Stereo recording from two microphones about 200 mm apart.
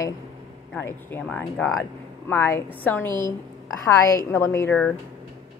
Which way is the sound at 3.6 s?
15° left (ahead or behind).